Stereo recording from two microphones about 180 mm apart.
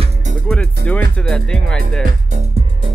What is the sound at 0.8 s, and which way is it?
Speech, 65° right (ahead or behind).